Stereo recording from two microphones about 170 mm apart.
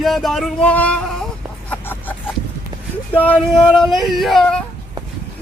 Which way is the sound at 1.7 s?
10° left (ahead or behind).